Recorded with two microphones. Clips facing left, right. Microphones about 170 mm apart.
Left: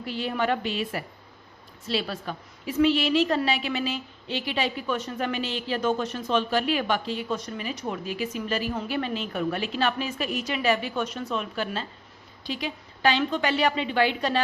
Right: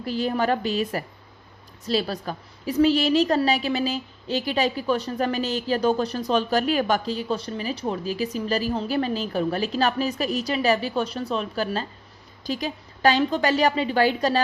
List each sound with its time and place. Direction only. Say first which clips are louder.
0.0 s a woman's voice: right 4 dB; 40° right (ahead or behind)